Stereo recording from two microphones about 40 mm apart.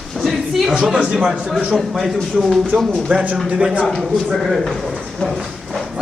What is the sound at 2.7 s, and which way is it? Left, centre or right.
Speech, right.